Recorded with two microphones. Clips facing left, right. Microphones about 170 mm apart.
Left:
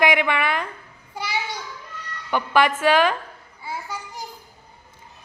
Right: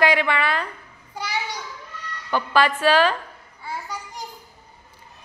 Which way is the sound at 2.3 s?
15° left (ahead or behind).